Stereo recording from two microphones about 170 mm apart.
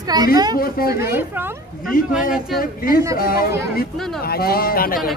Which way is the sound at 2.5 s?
60° left (ahead or behind).